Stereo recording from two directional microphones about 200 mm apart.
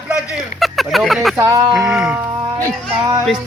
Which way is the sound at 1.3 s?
15° right (ahead or behind).